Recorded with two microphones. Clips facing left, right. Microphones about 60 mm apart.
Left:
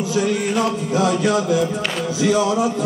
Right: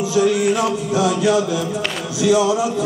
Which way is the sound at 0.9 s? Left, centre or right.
Left.